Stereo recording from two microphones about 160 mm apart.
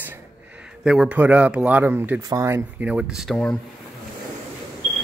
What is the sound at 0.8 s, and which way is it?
Speech, 5° right (ahead or behind).